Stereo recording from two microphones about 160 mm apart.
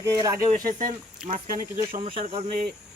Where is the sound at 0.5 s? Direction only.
60° right (ahead or behind).